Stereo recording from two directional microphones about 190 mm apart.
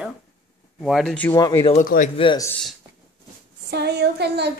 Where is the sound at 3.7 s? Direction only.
60° right (ahead or behind).